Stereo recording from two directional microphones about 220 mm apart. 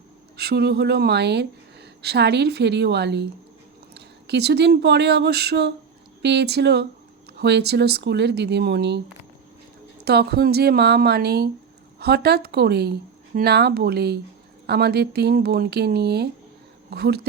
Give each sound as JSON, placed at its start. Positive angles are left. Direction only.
{"t": 0.3, "sound": "speech", "side_deg": -50}
{"t": 10.0, "sound": "speech", "side_deg": -45}